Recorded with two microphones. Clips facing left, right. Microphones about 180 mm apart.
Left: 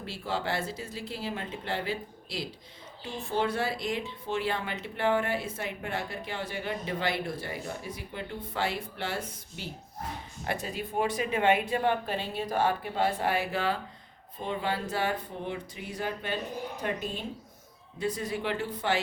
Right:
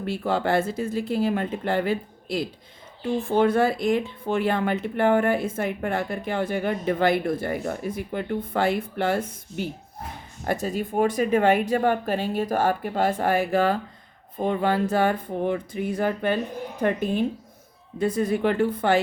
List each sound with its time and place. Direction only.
0.0 s speech: 55° right (ahead or behind)